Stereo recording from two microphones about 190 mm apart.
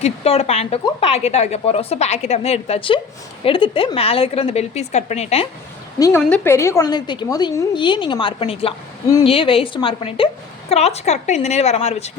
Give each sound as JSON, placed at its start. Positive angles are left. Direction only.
{"t": 0.0, "sound": "speech", "side_deg": 35}
{"t": 6.0, "sound": "a woman's voice", "side_deg": 10}